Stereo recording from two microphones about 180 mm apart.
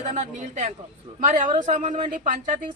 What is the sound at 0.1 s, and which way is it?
A woman's voice, 40° right (ahead or behind).